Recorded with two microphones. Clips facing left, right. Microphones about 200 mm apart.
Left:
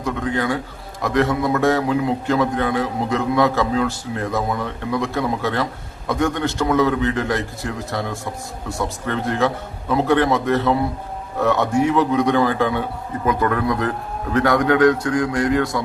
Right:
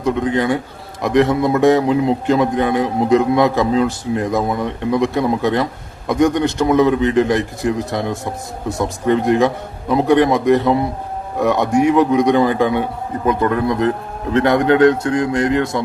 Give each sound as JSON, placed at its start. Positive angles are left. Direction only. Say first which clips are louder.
{"t": 0.0, "sound": "a man's voice", "louder": "right 5 dB", "side_deg": -20}